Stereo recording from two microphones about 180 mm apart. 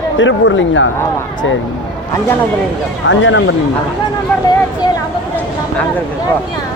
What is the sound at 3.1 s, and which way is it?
Speech, 90° left.